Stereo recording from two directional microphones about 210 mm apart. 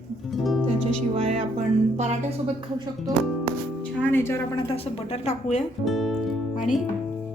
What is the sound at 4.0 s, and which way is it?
Speech, 10° left (ahead or behind).